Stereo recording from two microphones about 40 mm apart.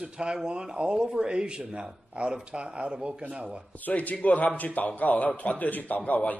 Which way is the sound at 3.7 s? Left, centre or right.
Left.